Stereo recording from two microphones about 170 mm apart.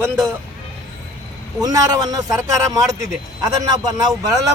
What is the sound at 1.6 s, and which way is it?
Speech, 20° right (ahead or behind).